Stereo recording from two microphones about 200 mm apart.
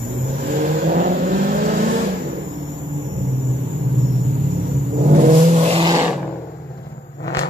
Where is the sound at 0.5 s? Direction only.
45° right (ahead or behind).